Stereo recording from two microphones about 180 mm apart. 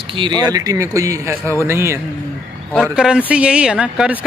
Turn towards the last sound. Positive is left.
turn(degrees=-5)  # may be behind; listen again after turning